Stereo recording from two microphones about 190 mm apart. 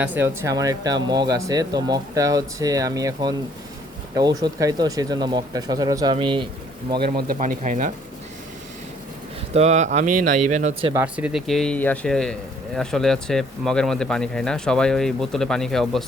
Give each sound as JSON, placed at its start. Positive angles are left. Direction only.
{"t": 0.0, "sound": "speech", "side_deg": -10}
{"t": 7.0, "sound": "speech", "side_deg": -55}
{"t": 7.3, "sound": "speech", "side_deg": -40}
{"t": 9.5, "sound": "speech", "side_deg": -35}
{"t": 10.9, "sound": "speech", "side_deg": -5}